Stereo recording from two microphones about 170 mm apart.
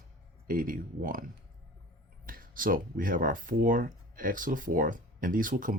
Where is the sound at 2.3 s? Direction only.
55° right (ahead or behind).